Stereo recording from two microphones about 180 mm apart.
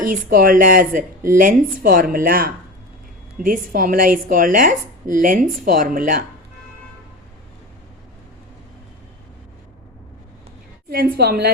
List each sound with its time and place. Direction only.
0.0 s a woman's voice: 50° right (ahead or behind)
10.8 s a woman's voice: 60° right (ahead or behind)